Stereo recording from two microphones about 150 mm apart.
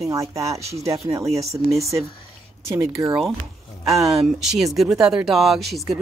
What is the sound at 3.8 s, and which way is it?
Speech, centre (ahead or behind).